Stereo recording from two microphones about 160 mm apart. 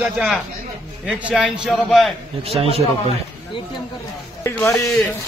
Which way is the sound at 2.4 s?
35° right (ahead or behind).